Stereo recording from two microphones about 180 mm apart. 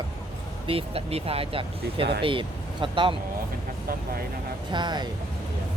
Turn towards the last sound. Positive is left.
turn(degrees=-25)  # may be behind; listen again after turning